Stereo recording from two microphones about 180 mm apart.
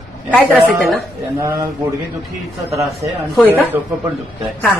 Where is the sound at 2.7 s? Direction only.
15° right (ahead or behind).